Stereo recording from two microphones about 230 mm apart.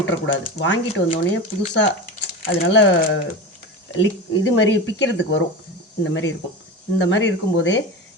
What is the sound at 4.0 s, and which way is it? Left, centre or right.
Speech, left.